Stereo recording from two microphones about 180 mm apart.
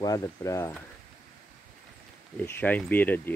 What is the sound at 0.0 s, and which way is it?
Speech, 20° left (ahead or behind).